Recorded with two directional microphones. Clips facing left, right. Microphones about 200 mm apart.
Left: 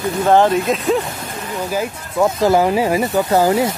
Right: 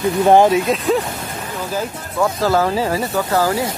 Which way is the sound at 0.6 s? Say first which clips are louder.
Even; centre (ahead or behind).